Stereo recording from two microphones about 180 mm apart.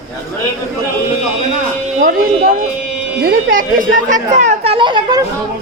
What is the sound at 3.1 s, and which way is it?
Speech, 55° right (ahead or behind).